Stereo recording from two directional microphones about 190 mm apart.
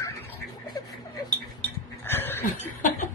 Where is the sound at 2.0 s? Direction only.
10° left (ahead or behind).